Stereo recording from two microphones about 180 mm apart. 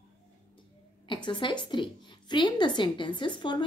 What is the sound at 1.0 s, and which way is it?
A woman's voice, 25° left (ahead or behind).